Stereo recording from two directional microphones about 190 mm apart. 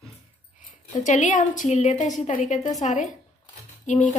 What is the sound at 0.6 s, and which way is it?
A woman's voice, 40° left (ahead or behind).